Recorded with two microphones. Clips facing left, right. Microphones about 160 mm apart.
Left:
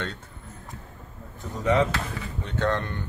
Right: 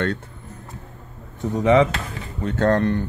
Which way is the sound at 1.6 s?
75° right (ahead or behind).